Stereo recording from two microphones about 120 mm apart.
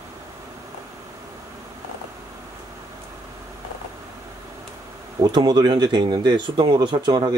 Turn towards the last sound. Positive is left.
turn(degrees=-35)  # may be behind; listen again after turning